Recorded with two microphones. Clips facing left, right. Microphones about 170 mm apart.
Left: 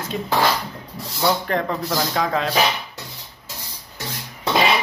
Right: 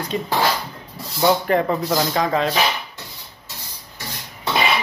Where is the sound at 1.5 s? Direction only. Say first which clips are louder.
Right 4 dB; 5° right (ahead or behind).